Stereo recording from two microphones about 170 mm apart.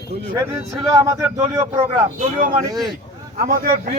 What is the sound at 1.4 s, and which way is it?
Speech, 30° right (ahead or behind).